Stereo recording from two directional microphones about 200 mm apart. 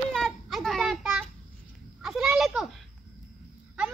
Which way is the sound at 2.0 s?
Centre (ahead or behind).